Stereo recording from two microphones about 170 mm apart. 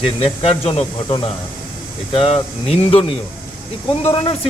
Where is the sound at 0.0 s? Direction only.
35° left (ahead or behind).